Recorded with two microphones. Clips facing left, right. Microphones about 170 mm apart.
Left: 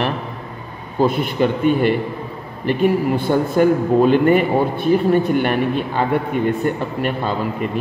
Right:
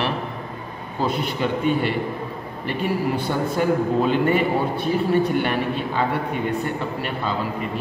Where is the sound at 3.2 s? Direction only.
50° left (ahead or behind).